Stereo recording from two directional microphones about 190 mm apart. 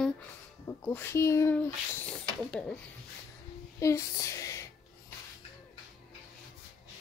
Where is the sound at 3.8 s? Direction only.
15° left (ahead or behind).